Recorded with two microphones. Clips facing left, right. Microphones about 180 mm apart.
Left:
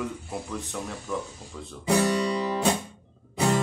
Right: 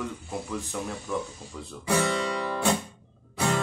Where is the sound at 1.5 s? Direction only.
Centre (ahead or behind).